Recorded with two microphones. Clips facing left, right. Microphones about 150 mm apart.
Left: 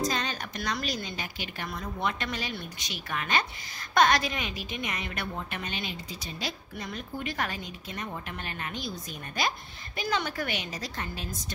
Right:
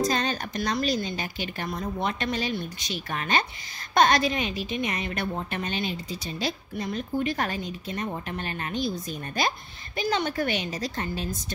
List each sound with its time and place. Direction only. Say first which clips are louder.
0.1 s a woman's voice: right 5 dB; 35° right (ahead or behind)